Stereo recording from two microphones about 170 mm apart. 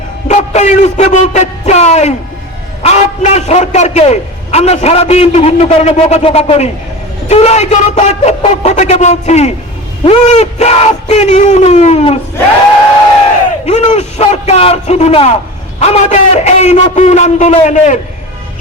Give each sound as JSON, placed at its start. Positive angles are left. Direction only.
{"t": 0.3, "sound": "a man's voice", "side_deg": 40}
{"t": 13.7, "sound": "a man's voice", "side_deg": 40}